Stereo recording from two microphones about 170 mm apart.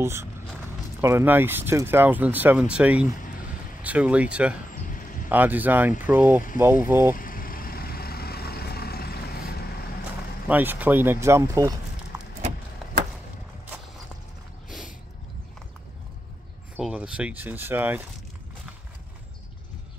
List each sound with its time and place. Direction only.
0.0 s speech: 15° right (ahead or behind)
4.8 s a sound: 50° left (ahead or behind)
5.3 s speech: 10° right (ahead or behind)
7.2 s vehicle: 55° left (ahead or behind)
10.5 s speech: 10° right (ahead or behind)
16.7 s speech: 5° right (ahead or behind)